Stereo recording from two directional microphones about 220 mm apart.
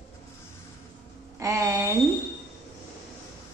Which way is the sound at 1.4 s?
15° right (ahead or behind).